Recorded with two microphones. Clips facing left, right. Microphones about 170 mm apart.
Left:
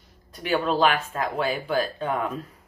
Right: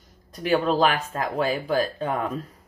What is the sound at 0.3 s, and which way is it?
Speech, 40° right (ahead or behind).